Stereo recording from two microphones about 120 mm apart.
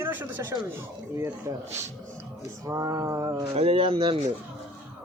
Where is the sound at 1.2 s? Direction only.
25° right (ahead or behind).